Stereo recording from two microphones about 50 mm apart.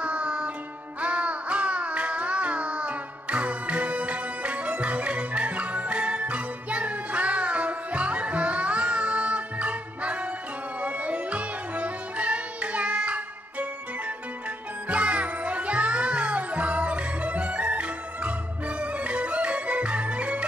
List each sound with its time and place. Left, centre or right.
0.0 s music: right